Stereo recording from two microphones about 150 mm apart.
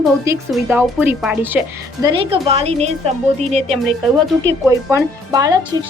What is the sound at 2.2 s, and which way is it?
A woman's voice, 40° right (ahead or behind).